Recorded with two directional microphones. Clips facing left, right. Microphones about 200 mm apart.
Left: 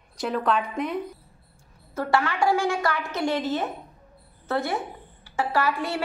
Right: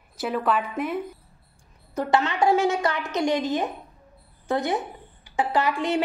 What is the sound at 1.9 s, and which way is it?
A woman's voice, 20° right (ahead or behind).